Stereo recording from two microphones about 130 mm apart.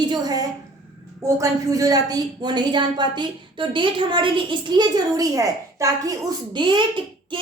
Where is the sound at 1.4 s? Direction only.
25° right (ahead or behind).